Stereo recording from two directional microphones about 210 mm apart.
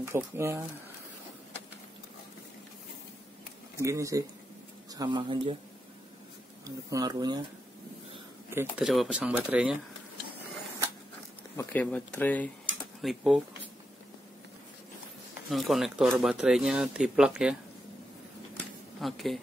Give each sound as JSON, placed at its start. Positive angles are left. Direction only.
{"t": 0.0, "sound": "speech", "side_deg": -10}
{"t": 3.7, "sound": "speech", "side_deg": -15}
{"t": 6.6, "sound": "speech", "side_deg": -15}
{"t": 8.5, "sound": "speech", "side_deg": -5}
{"t": 11.5, "sound": "speech", "side_deg": 5}
{"t": 15.5, "sound": "speech", "side_deg": 0}
{"t": 18.9, "sound": "speech", "side_deg": 0}